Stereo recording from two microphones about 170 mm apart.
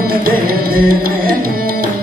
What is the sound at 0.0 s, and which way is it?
Music, 60° right (ahead or behind).